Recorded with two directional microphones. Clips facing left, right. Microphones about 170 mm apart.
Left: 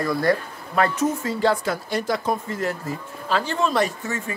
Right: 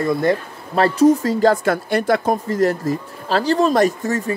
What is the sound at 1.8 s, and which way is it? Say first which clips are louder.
Speech: right 6 dB; 60° right (ahead or behind).